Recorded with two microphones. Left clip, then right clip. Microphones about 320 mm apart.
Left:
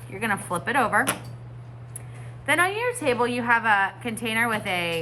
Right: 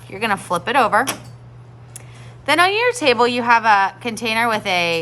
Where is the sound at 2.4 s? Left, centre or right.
Centre.